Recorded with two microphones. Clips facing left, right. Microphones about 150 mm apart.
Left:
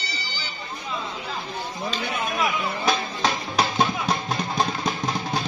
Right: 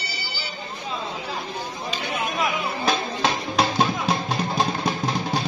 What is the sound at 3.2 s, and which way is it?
Music, centre (ahead or behind).